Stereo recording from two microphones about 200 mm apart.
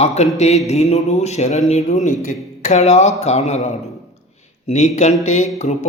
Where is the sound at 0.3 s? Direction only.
35° left (ahead or behind).